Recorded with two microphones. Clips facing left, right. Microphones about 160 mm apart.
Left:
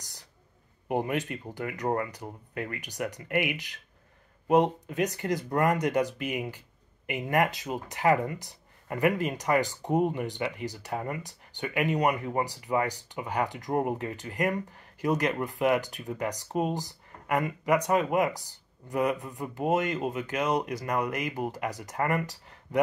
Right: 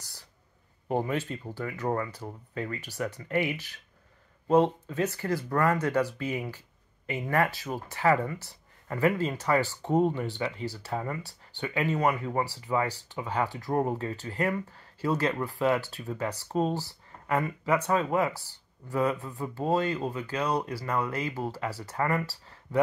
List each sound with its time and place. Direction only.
0.8 s speech: 15° left (ahead or behind)